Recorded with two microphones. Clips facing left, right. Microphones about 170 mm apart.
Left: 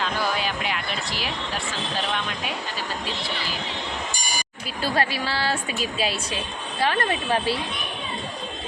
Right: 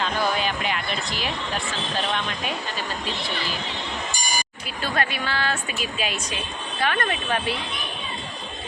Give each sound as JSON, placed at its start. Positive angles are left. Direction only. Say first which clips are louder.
{"t": 0.3, "sound": "music", "louder": "right 1 dB", "side_deg": 5}
{"t": 4.8, "sound": "a woman's voice", "louder": "left 2 dB", "side_deg": 30}